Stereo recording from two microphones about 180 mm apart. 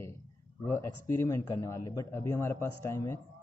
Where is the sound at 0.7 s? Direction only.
15° left (ahead or behind).